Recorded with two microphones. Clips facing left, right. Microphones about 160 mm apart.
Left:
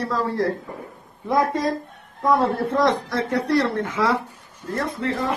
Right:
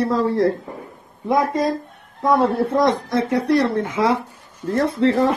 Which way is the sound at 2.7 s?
15° right (ahead or behind).